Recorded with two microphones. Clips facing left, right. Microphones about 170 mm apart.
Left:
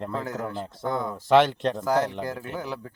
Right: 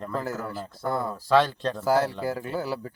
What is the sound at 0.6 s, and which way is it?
Speech, 25° left (ahead or behind).